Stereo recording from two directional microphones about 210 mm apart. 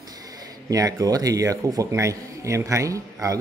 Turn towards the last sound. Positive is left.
turn(degrees=-15)  # may be behind; listen again after turning